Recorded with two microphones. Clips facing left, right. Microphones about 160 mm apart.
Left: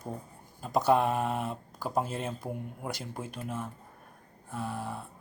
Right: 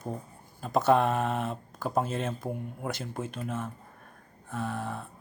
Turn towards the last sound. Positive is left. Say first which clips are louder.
# right 2 dB
turn(degrees=10)  # may be behind; listen again after turning